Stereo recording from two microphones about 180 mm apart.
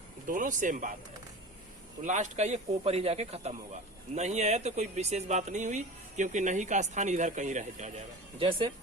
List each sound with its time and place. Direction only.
0.3 s speech: 45° right (ahead or behind)
2.0 s speech: 40° right (ahead or behind)
8.4 s speech: 30° right (ahead or behind)